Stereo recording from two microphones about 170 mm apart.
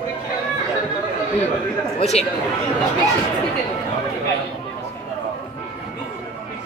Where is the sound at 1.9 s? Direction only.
40° left (ahead or behind).